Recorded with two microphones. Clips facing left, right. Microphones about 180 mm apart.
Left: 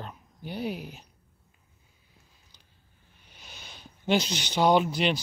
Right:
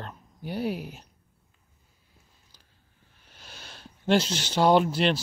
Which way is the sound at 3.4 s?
5° right (ahead or behind).